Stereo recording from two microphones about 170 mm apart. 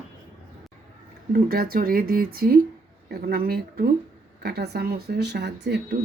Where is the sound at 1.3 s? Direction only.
60° right (ahead or behind).